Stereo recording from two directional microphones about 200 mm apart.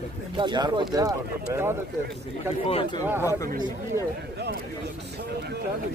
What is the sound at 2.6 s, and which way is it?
Speech, 30° left (ahead or behind).